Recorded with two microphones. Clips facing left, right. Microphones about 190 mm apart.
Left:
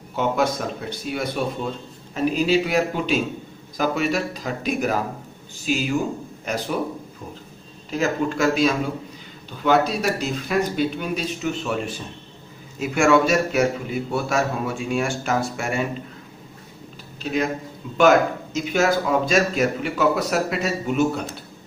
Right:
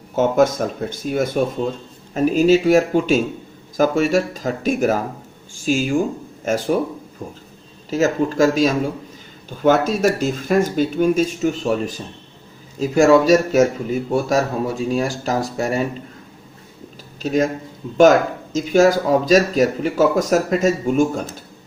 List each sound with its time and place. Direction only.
0.2 s speech: 45° right (ahead or behind)
7.9 s speech: 40° right (ahead or behind)
17.2 s speech: 45° right (ahead or behind)